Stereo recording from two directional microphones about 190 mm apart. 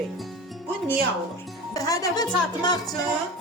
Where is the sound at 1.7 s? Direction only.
20° left (ahead or behind).